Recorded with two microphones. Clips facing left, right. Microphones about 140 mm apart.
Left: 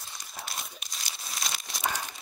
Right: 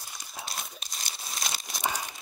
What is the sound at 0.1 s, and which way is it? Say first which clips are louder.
Crumpling: right 1 dB; centre (ahead or behind).